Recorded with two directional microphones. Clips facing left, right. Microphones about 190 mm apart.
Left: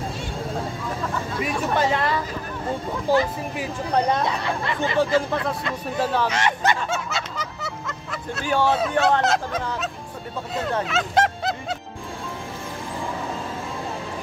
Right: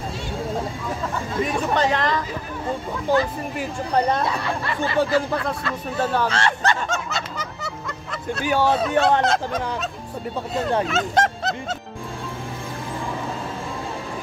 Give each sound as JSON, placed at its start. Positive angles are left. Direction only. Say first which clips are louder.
{"t": 1.4, "sound": "speech", "louder": "right 2 dB", "side_deg": 10}
{"t": 4.8, "sound": "speech", "louder": "even", "side_deg": 20}
{"t": 6.2, "sound": "music", "louder": "even", "side_deg": 10}
{"t": 9.2, "sound": "speech", "louder": "right 1 dB", "side_deg": 5}
{"t": 10.9, "sound": "a sound", "louder": "even", "side_deg": 0}